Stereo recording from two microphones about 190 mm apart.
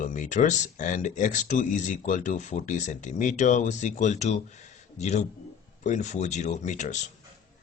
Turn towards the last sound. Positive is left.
turn(degrees=40)  # may be behind; listen again after turning